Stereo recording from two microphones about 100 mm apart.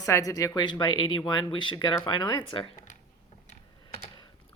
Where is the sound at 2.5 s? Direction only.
60° left (ahead or behind).